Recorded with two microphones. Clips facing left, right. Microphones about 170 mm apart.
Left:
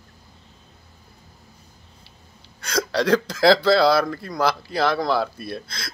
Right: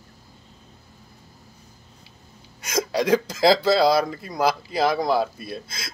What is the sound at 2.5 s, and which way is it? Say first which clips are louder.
Hiccup: even; 20° right (ahead or behind).